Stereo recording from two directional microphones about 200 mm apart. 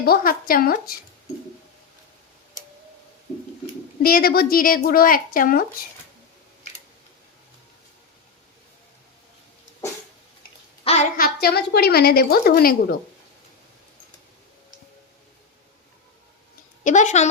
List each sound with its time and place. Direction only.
0.0 s a woman's voice: 45° left (ahead or behind)
4.0 s a woman's voice: 50° left (ahead or behind)
10.9 s child singing: 30° left (ahead or behind)
11.2 s a woman's voice: 50° left (ahead or behind)
16.8 s speech: 40° left (ahead or behind)